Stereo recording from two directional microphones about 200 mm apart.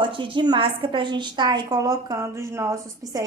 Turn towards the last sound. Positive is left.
turn(degrees=-15)  # may be behind; listen again after turning